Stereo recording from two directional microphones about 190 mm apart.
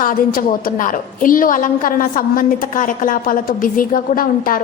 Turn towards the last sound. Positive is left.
turn(degrees=45)  # may be behind; listen again after turning